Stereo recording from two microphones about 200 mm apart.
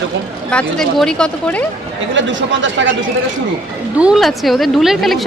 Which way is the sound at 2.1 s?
65° right (ahead or behind).